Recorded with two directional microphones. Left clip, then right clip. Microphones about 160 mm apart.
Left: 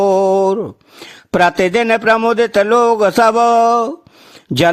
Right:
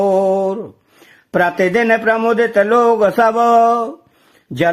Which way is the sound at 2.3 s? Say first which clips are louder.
Left 1 dB; 35° left (ahead or behind).